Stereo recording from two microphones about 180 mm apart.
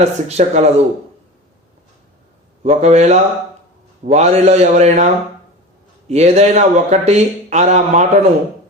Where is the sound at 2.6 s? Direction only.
35° right (ahead or behind).